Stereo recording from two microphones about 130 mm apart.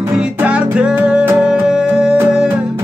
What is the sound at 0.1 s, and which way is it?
Music, 10° right (ahead or behind).